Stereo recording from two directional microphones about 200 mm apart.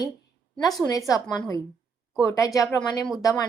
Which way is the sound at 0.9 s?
15° left (ahead or behind).